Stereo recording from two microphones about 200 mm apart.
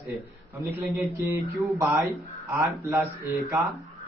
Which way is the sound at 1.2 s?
15° right (ahead or behind).